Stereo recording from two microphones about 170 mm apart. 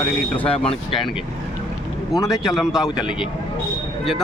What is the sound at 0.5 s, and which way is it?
Speech, 35° left (ahead or behind).